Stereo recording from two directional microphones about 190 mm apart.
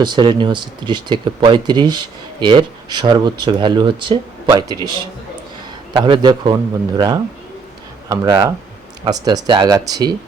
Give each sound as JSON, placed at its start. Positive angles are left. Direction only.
{"t": 0.0, "sound": "speech", "side_deg": -25}